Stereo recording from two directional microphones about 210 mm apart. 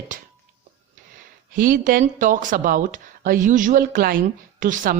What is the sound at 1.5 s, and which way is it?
Speech, 40° right (ahead or behind).